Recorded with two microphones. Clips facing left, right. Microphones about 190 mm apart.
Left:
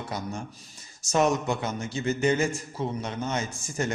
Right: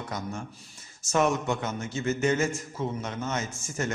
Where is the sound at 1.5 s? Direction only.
10° left (ahead or behind).